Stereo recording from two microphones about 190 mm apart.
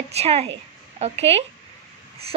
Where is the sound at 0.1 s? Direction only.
35° right (ahead or behind).